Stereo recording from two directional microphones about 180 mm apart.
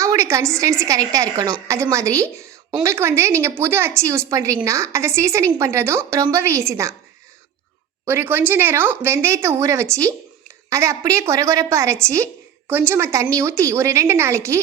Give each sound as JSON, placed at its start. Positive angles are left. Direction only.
{"t": 0.0, "sound": "a woman's voice", "side_deg": -15}
{"t": 8.0, "sound": "a woman's voice", "side_deg": -10}